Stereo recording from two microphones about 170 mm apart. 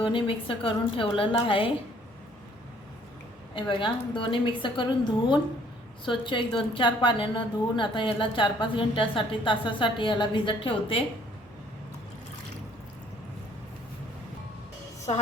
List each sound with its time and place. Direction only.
0.0 s a woman's voice: 30° left (ahead or behind)
3.5 s a woman's voice: 30° left (ahead or behind)
15.1 s a woman's voice: 40° left (ahead or behind)